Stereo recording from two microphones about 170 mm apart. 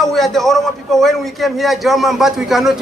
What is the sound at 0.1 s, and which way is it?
A man's voice, centre (ahead or behind).